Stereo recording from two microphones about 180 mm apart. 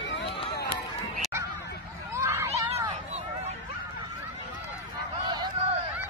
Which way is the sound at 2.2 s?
15° right (ahead or behind).